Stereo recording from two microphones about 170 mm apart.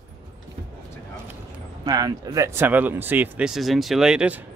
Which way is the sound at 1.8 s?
20° right (ahead or behind).